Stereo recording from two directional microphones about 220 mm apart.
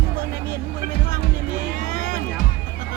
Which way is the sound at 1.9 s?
35° right (ahead or behind).